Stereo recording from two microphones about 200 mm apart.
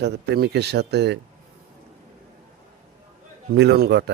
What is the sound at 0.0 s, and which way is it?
A man's voice, 55° right (ahead or behind).